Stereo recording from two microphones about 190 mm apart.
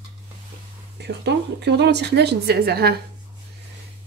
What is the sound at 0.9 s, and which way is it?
Speech, 60° right (ahead or behind).